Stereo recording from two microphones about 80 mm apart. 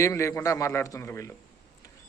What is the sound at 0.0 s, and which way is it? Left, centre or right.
A man's voice, left.